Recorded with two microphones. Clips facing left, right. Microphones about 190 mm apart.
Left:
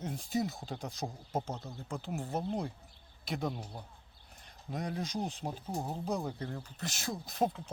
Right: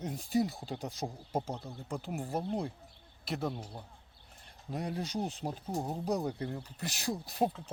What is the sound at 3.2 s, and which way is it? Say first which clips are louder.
Speech: right 1 dB; 5° right (ahead or behind).